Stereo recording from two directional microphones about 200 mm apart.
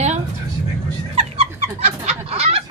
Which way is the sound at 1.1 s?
30° right (ahead or behind).